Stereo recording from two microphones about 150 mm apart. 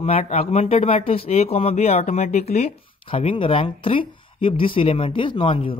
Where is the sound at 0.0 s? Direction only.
45° left (ahead or behind).